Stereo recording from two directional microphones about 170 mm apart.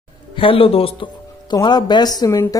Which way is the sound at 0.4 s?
30° left (ahead or behind).